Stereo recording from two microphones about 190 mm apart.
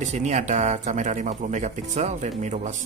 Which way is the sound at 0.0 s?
40° right (ahead or behind).